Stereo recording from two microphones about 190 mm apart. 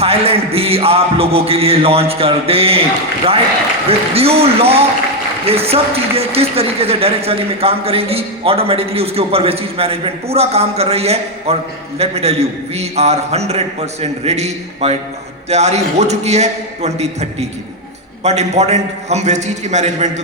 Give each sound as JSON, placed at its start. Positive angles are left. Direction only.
{"t": 0.0, "sound": "a man's voice", "side_deg": -30}
{"t": 3.8, "sound": "a man's voice", "side_deg": -30}